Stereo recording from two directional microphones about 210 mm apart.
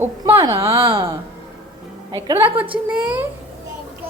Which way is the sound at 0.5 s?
10° right (ahead or behind).